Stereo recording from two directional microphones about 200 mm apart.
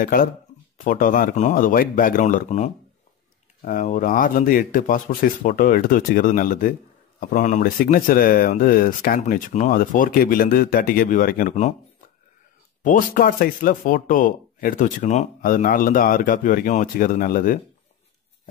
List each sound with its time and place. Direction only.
0.0 s speech: 45° left (ahead or behind)
12.8 s speech: 45° left (ahead or behind)